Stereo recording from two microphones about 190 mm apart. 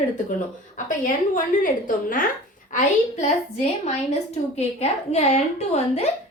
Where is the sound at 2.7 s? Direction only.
35° left (ahead or behind).